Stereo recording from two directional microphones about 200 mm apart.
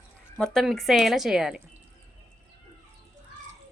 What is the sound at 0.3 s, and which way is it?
Speech, centre (ahead or behind).